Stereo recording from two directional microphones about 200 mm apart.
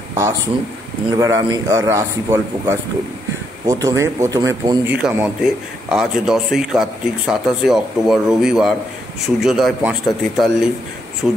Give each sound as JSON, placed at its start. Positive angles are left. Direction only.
{"t": 1.1, "sound": "a man's voice", "side_deg": -15}